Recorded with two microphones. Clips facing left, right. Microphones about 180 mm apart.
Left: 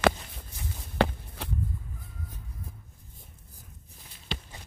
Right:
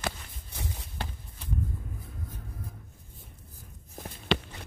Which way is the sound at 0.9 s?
75° left (ahead or behind).